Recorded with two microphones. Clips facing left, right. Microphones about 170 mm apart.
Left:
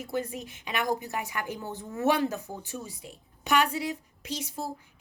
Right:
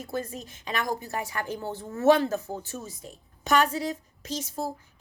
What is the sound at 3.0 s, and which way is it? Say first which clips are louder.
A woman's voice: right 4 dB; 40° right (ahead or behind).